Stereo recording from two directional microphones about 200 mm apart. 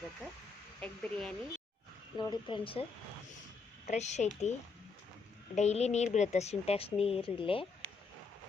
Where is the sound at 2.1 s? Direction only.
20° left (ahead or behind).